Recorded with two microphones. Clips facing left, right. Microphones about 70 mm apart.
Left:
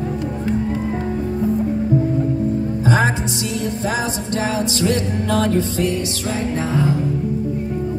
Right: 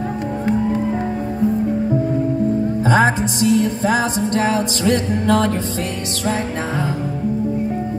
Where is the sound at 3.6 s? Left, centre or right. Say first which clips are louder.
Right 4 dB; right.